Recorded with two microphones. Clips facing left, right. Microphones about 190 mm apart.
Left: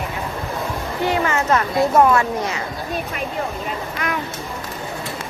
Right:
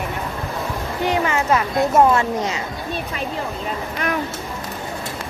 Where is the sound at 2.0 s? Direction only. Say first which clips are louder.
Even; 25° right (ahead or behind).